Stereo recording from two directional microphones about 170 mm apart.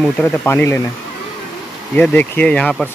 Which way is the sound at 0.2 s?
10° left (ahead or behind).